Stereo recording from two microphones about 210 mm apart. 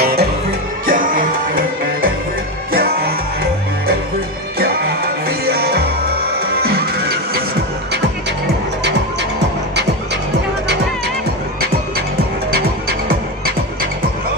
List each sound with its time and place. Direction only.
0.0 s music: 50° right (ahead or behind)
5.5 s music: 50° right (ahead or behind)